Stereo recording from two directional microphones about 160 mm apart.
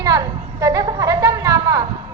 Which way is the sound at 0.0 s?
20° right (ahead or behind).